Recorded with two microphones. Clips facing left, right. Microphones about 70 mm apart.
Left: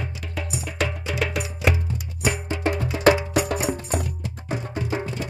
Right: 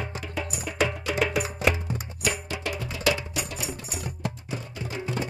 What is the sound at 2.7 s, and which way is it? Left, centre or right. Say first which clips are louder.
Music: left 9 dB; left.